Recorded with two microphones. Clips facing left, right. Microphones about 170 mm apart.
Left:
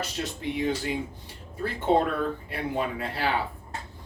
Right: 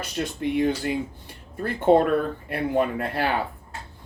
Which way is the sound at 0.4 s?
55° right (ahead or behind).